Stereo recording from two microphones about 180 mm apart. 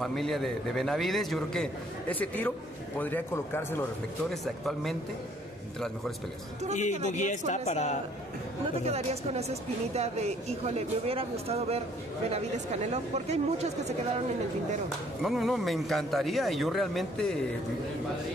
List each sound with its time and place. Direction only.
0.0 s a man's voice: centre (ahead or behind)
6.7 s a man's voice: 40° left (ahead or behind)
8.8 s speech: 35° right (ahead or behind)
15.2 s a man's voice: centre (ahead or behind)